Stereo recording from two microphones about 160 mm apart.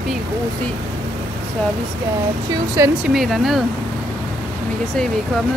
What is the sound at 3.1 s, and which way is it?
Speech, centre (ahead or behind).